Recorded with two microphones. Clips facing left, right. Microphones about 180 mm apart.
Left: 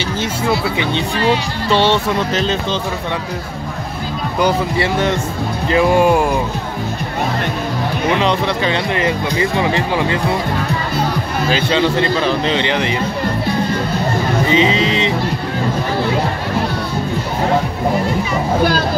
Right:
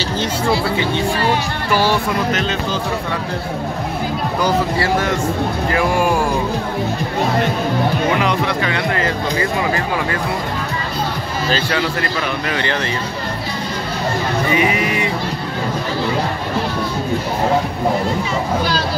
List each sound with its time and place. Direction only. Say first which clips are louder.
1.7 s speech: left 3 dB; 25° left (ahead or behind)
4.4 s speech: left 2 dB; 20° left (ahead or behind)
8.2 s speech: left 2 dB; 25° left (ahead or behind)
11.5 s speech: left 5 dB; 25° left (ahead or behind)
14.5 s music: left 3 dB; 25° left (ahead or behind)
18.6 s speech: left 4 dB; 55° left (ahead or behind)